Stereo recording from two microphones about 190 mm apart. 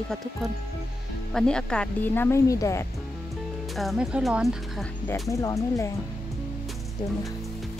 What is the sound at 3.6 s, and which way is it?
Speech, centre (ahead or behind).